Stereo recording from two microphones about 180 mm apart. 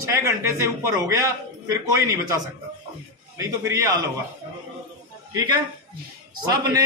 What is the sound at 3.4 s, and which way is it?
Speech, 15° right (ahead or behind).